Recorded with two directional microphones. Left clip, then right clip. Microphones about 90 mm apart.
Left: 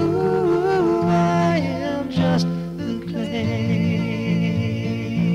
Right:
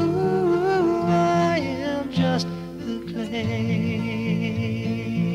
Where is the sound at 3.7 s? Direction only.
30° left (ahead or behind).